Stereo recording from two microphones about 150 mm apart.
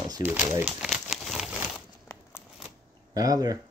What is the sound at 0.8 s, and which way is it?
Crumpling, centre (ahead or behind).